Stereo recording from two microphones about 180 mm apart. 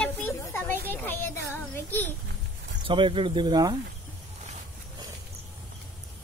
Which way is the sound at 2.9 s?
30° right (ahead or behind).